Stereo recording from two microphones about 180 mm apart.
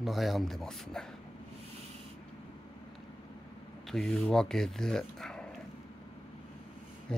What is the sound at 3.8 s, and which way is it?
Speech, centre (ahead or behind).